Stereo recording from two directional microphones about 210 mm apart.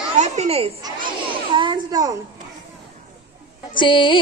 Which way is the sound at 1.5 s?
20° right (ahead or behind).